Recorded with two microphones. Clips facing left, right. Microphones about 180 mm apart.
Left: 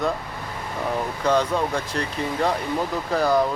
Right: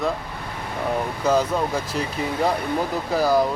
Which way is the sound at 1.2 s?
5° right (ahead or behind).